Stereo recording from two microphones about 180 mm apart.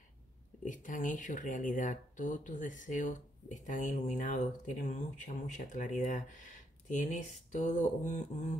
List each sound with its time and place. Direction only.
0.7 s speech: 45° left (ahead or behind)